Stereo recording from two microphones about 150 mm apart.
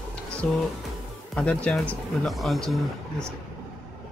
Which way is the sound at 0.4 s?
5° left (ahead or behind).